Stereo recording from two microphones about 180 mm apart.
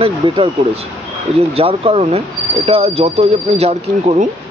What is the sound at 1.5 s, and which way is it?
Speech, 30° right (ahead or behind).